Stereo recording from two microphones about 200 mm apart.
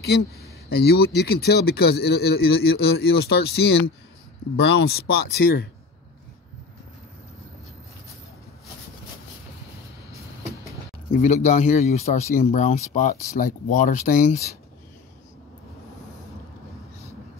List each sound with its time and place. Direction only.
0.0 s speech: 55° left (ahead or behind)
11.1 s speech: 40° left (ahead or behind)